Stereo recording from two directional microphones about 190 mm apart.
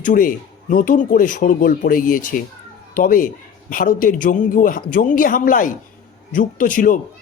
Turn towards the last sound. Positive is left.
turn(degrees=45)  # may be behind; listen again after turning